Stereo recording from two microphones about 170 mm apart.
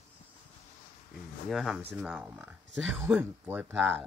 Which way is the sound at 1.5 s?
Centre (ahead or behind).